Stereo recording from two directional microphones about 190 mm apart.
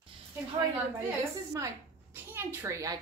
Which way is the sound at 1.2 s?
15° right (ahead or behind).